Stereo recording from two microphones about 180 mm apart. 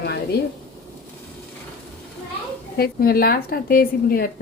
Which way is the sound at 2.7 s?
55° left (ahead or behind).